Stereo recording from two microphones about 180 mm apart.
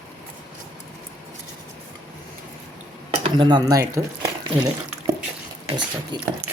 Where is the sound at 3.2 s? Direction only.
25° right (ahead or behind).